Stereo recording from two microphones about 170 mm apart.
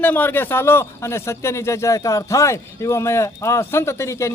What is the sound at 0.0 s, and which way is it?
A man's voice, 10° left (ahead or behind).